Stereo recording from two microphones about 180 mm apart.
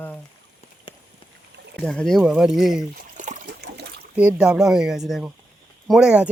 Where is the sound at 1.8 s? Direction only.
5° left (ahead or behind).